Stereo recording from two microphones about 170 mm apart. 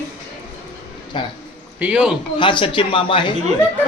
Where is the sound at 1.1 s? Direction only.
30° left (ahead or behind).